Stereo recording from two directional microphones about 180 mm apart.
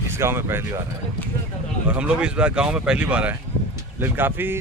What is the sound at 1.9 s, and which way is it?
A man's voice, 5° right (ahead or behind).